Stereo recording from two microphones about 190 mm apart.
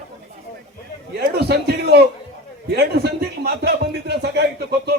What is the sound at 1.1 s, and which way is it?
A man's voice, 60° right (ahead or behind).